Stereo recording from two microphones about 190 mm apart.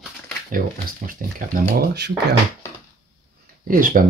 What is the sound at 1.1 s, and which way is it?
Speech, 45° right (ahead or behind).